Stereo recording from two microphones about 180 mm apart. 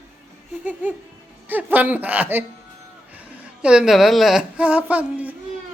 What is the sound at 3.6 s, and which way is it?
Speech, 5° right (ahead or behind).